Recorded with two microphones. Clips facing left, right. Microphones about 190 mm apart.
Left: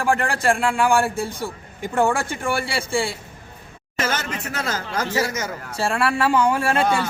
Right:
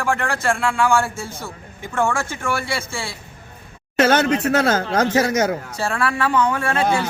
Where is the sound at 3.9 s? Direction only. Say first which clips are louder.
Right 10 dB; 65° right (ahead or behind).